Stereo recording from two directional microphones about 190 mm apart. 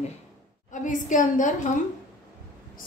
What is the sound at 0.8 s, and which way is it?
Speech, 40° left (ahead or behind).